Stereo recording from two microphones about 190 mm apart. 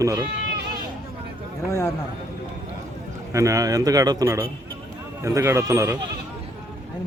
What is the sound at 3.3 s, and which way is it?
Speech, 15° right (ahead or behind).